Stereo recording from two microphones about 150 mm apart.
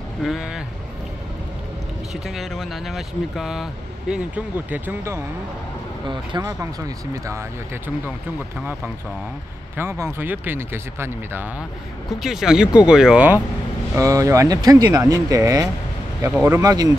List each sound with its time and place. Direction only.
0.2 s speech: 5° right (ahead or behind)
2.1 s speech: centre (ahead or behind)
12.1 s speech: centre (ahead or behind)
13.9 s speech: 20° right (ahead or behind)